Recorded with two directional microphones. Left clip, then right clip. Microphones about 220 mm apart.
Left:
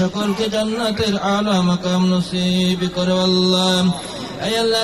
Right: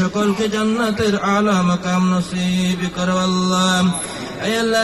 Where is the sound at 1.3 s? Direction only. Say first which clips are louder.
Right 2 dB; 45° left (ahead or behind).